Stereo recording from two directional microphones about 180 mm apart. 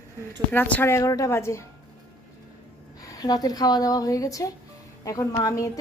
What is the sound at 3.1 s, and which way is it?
A woman's voice, 20° left (ahead or behind).